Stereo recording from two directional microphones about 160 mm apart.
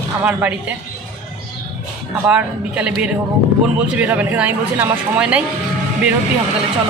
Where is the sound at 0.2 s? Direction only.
10° right (ahead or behind).